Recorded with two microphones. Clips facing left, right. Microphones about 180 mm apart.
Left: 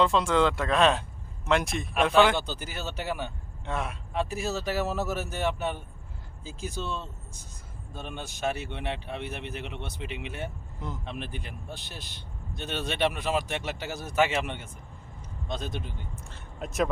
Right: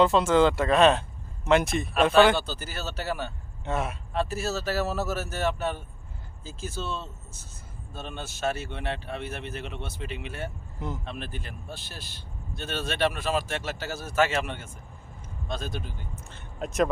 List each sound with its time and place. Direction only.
0.0 s speech: 5° right (ahead or behind)
2.3 s speech: 15° left (ahead or behind)
3.7 s speech: 5° right (ahead or behind)
4.1 s speech: 15° left (ahead or behind)
10.8 s speech: 5° right (ahead or behind)
11.0 s a man's voice: 20° left (ahead or behind)
16.3 s speech: centre (ahead or behind)